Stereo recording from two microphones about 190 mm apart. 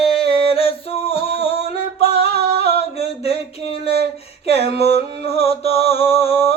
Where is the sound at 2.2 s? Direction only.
60° right (ahead or behind).